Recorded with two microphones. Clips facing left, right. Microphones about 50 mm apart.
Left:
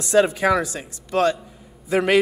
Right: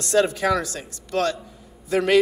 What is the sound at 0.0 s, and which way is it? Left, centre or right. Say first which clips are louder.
A man's voice: left 3 dB; centre.